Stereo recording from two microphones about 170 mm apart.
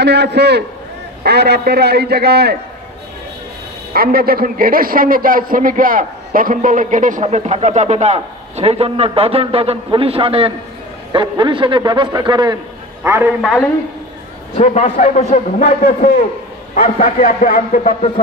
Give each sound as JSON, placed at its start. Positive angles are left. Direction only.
{"t": 0.0, "sound": "a man's voice", "side_deg": -80}
{"t": 3.9, "sound": "a man's voice", "side_deg": -60}
{"t": 13.0, "sound": "a man's voice", "side_deg": -15}
{"t": 13.4, "sound": "a man's voice", "side_deg": -5}
{"t": 14.6, "sound": "a man's voice", "side_deg": 40}
{"t": 15.6, "sound": "a man's voice", "side_deg": 55}